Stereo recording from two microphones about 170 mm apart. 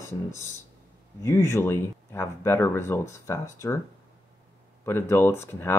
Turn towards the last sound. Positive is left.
turn(degrees=15)  # may be behind; listen again after turning